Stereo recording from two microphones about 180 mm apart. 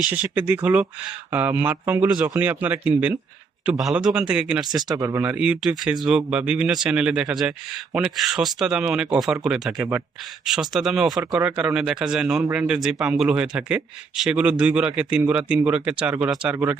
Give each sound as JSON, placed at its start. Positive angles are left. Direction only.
{"t": 0.1, "sound": "speech", "side_deg": -10}
{"t": 4.7, "sound": "speech", "side_deg": -20}
{"t": 5.2, "sound": "speech", "side_deg": -10}